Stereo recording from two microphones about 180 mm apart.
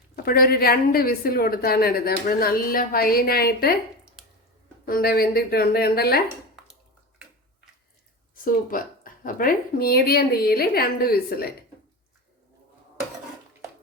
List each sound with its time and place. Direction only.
0.2 s a woman's voice: 55° left (ahead or behind)
4.9 s a woman's voice: 55° left (ahead or behind)
8.7 s a woman's voice: 50° left (ahead or behind)